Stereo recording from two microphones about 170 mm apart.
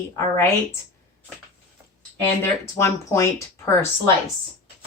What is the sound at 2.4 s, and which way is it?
Speech, 15° left (ahead or behind).